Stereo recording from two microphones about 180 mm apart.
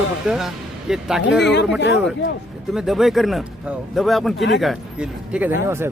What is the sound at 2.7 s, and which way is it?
Speech, centre (ahead or behind).